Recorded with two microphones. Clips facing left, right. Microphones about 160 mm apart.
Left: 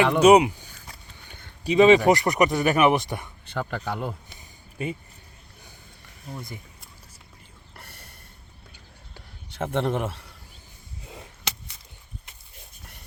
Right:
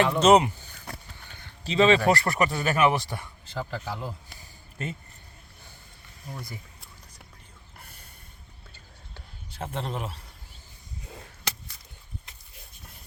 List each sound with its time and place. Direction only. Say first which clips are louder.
0.2 s a man's voice: left 4 dB; 10° left (ahead or behind)
3.4 s speech: left 3 dB; 65° left (ahead or behind)
4.4 s a sound: left 4 dB; 10° left (ahead or behind)
6.3 s speech: left 2 dB; 20° left (ahead or behind)
7.8 s snort: left 4 dB; 75° left (ahead or behind)
9.6 s a man's voice: left 8 dB; 60° left (ahead or behind)